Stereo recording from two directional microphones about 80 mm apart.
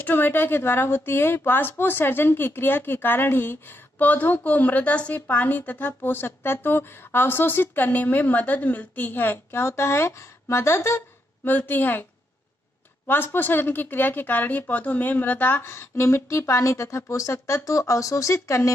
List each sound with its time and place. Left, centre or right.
0.0 s a woman's voice: left
11.4 s a woman's voice: left